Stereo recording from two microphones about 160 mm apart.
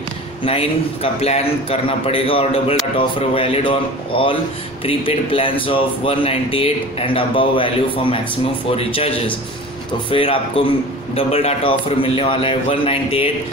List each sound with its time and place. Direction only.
0.5 s speech: 40° left (ahead or behind)
4.8 s speech: 35° left (ahead or behind)